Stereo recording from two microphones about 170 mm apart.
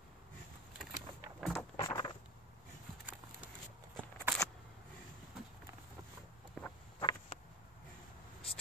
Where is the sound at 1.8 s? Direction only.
25° left (ahead or behind).